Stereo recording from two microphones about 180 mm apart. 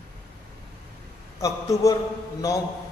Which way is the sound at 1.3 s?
15° left (ahead or behind).